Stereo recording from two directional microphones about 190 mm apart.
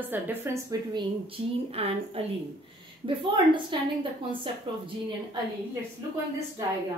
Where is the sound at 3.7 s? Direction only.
25° right (ahead or behind).